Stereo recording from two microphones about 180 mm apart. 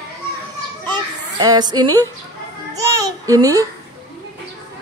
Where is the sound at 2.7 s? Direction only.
20° right (ahead or behind).